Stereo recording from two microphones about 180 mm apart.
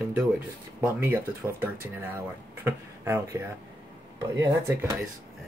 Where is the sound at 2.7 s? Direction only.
15° right (ahead or behind).